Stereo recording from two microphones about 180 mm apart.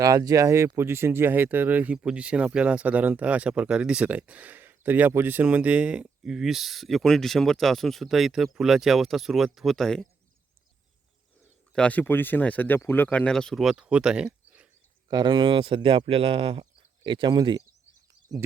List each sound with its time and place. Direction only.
0.0 s speech: 20° right (ahead or behind); by 10.1 s 5° left (ahead or behind)
11.7 s speech: 5° left (ahead or behind)
15.1 s speech: 25° right (ahead or behind)